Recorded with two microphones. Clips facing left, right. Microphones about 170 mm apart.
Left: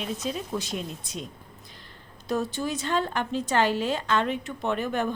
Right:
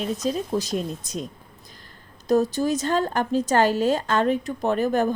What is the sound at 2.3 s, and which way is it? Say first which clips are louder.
A woman's voice: right 8 dB; 40° right (ahead or behind).